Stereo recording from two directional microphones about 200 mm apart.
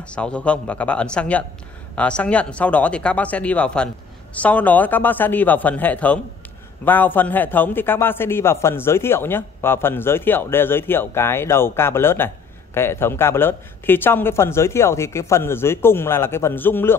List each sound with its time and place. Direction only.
0.0 s a man's voice: 5° left (ahead or behind)